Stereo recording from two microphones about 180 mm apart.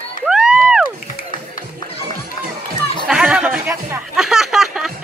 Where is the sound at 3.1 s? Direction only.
5° right (ahead or behind).